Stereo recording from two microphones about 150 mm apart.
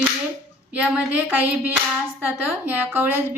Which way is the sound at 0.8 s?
10° right (ahead or behind).